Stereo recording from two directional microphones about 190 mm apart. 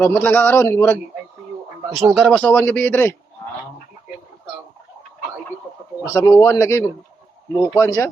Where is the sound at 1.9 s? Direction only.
Centre (ahead or behind).